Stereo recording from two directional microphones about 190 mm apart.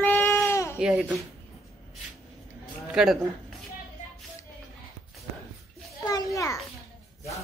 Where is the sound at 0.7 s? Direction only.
5° right (ahead or behind).